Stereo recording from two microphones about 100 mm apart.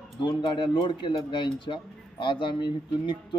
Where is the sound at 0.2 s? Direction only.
55° left (ahead or behind).